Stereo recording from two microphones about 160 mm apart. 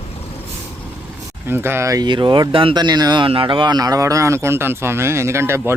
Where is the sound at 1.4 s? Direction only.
15° right (ahead or behind).